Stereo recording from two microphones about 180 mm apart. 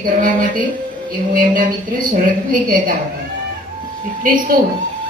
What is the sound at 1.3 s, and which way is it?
A woman's voice, 50° right (ahead or behind).